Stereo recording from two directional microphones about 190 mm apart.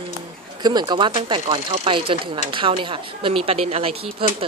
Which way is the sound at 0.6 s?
20° right (ahead or behind).